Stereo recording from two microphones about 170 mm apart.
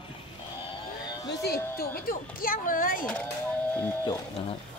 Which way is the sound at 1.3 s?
75° left (ahead or behind).